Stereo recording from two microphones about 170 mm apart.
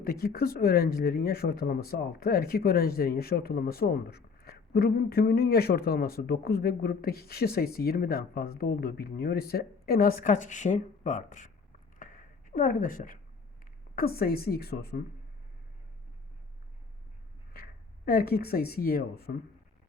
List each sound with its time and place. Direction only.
0.0 s speech: 60° left (ahead or behind)
11.9 s a sound: 50° left (ahead or behind)
13.9 s speech: 60° left (ahead or behind)
17.5 s speech: 60° left (ahead or behind)